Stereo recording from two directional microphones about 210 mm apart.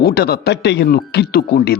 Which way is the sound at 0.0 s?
50° left (ahead or behind).